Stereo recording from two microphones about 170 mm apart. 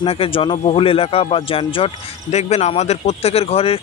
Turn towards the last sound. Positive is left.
turn(degrees=35)  # may be behind; listen again after turning